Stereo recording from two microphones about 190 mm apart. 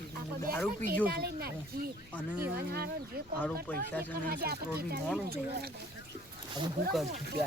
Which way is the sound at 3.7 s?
10° left (ahead or behind).